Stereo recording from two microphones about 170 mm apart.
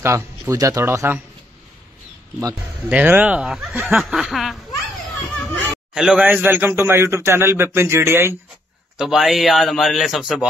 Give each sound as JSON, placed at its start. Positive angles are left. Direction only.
{"t": 0.0, "sound": "a man's voice", "side_deg": -15}
{"t": 2.9, "sound": "a man's voice", "side_deg": -10}
{"t": 5.9, "sound": "a man's voice", "side_deg": -5}
{"t": 8.9, "sound": "a man's voice", "side_deg": -5}